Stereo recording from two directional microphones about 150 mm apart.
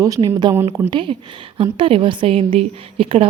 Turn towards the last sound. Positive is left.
turn(degrees=-40)  # may be behind; listen again after turning